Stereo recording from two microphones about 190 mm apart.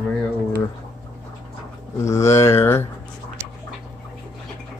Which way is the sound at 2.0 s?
15° left (ahead or behind).